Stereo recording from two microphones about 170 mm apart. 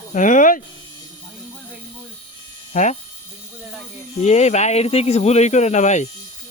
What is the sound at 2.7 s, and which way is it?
Speech, 45° left (ahead or behind).